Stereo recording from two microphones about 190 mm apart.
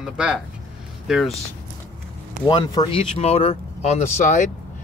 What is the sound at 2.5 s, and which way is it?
Speech, 25° left (ahead or behind).